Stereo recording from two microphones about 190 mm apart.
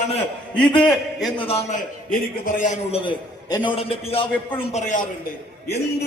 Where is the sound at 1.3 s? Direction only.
30° left (ahead or behind).